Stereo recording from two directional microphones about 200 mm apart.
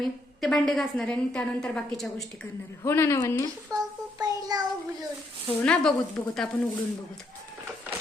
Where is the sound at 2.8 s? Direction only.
15° left (ahead or behind).